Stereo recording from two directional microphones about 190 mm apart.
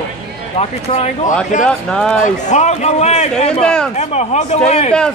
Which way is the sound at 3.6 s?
5° left (ahead or behind).